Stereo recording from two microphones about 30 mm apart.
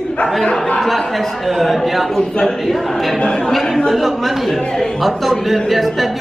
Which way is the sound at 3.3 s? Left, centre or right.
Left.